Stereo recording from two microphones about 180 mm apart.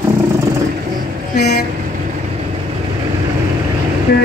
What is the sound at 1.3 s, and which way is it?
Vehicle, 65° left (ahead or behind).